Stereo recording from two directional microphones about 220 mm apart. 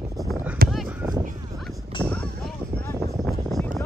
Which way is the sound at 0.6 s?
40° right (ahead or behind).